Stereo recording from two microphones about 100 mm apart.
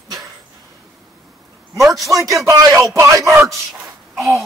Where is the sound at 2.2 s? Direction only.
35° right (ahead or behind).